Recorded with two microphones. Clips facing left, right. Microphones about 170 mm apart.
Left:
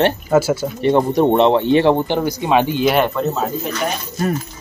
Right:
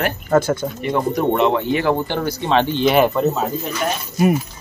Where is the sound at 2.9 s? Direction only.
5° right (ahead or behind).